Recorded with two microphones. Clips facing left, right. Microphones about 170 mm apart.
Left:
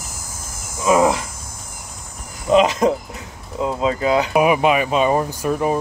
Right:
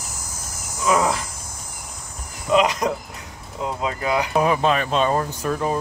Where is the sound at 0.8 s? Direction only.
20° left (ahead or behind).